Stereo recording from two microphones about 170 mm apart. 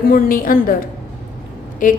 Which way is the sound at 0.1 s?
55° left (ahead or behind).